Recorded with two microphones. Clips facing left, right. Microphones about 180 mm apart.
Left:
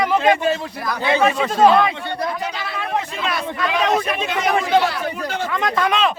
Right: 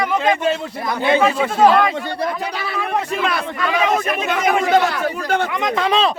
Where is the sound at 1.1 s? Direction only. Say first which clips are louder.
Right 1 dB; centre (ahead or behind).